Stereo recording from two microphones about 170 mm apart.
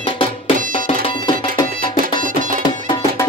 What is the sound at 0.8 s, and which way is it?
Music, 30° left (ahead or behind).